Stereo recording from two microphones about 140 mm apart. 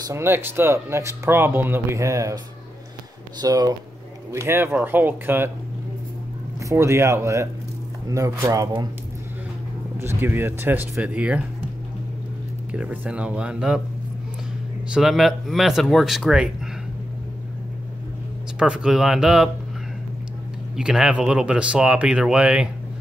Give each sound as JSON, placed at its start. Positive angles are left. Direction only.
{"t": 0.0, "sound": "speech", "side_deg": -20}
{"t": 6.6, "sound": "speech", "side_deg": -20}
{"t": 9.9, "sound": "speech", "side_deg": -15}
{"t": 12.7, "sound": "speech", "side_deg": -10}
{"t": 14.9, "sound": "speech", "side_deg": 0}
{"t": 18.6, "sound": "speech", "side_deg": -5}
{"t": 20.7, "sound": "speech", "side_deg": -5}